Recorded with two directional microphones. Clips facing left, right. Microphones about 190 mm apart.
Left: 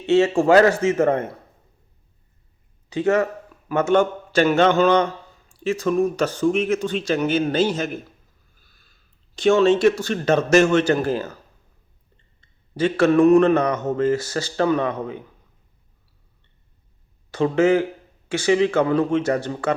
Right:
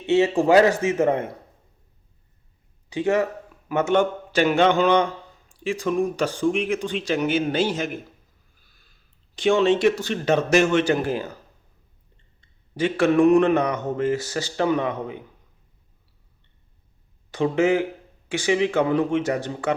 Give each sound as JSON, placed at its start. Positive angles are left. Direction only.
{"t": 0.0, "sound": "a man's voice", "side_deg": -15}
{"t": 2.9, "sound": "a man's voice", "side_deg": -15}
{"t": 9.3, "sound": "a man's voice", "side_deg": -15}
{"t": 12.4, "sound": "a man's voice", "side_deg": -15}
{"t": 17.3, "sound": "a man's voice", "side_deg": -15}